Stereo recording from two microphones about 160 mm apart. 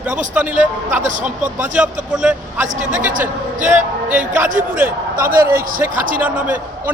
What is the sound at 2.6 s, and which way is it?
Speech, 50° right (ahead or behind).